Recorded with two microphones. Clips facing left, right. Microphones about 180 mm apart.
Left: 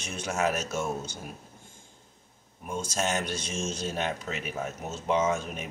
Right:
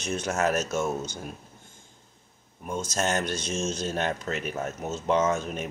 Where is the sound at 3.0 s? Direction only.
10° left (ahead or behind).